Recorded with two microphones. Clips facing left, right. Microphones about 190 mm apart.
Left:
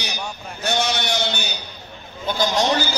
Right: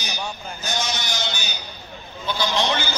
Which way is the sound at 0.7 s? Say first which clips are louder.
Left 6 dB; 65° left (ahead or behind).